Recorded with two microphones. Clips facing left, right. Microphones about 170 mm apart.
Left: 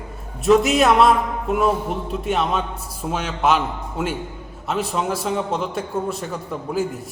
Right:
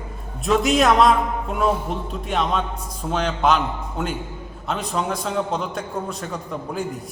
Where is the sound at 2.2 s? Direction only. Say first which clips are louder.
Left 1 dB; centre (ahead or behind).